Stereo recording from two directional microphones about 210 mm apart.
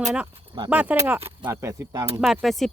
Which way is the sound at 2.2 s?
Centre (ahead or behind).